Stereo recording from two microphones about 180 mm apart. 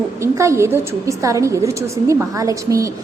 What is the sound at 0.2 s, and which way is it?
A woman's voice, 15° right (ahead or behind).